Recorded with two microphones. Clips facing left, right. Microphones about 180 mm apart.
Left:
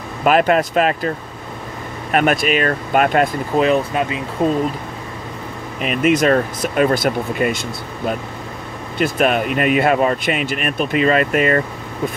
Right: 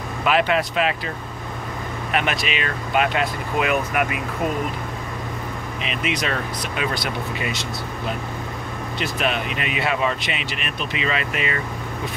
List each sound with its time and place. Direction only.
0.2 s speech: 45° left (ahead or behind)
2.1 s speech: 45° left (ahead or behind)
3.5 s speech: 30° left (ahead or behind)
5.8 s speech: 50° left (ahead or behind)
8.9 s speech: 50° left (ahead or behind)